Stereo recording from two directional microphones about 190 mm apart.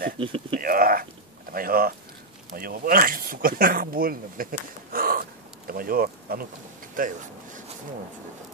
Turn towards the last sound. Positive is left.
turn(degrees=-45)  # may be behind; listen again after turning